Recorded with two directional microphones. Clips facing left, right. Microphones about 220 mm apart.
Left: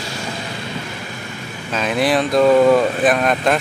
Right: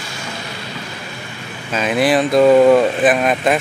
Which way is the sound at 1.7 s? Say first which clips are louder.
Right 2 dB; centre (ahead or behind).